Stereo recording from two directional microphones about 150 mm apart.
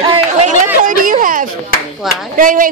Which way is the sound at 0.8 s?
65° right (ahead or behind).